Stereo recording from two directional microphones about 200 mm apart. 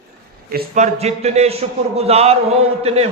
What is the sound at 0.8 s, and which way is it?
A man's voice, 30° right (ahead or behind).